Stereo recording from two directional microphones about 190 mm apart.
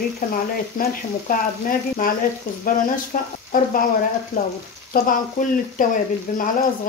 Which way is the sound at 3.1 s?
45° left (ahead or behind).